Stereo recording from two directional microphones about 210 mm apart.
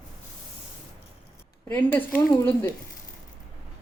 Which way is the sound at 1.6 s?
10° left (ahead or behind).